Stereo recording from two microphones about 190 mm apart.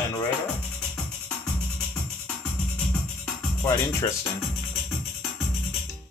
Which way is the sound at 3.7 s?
15° left (ahead or behind).